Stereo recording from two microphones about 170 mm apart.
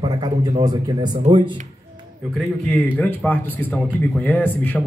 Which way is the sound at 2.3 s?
5° left (ahead or behind).